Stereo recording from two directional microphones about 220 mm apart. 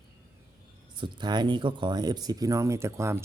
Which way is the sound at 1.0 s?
20° right (ahead or behind).